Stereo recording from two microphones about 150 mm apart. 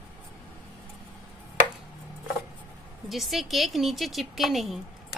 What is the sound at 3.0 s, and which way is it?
A woman's voice, centre (ahead or behind).